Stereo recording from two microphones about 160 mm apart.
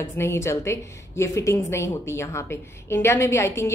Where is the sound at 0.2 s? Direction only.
15° left (ahead or behind).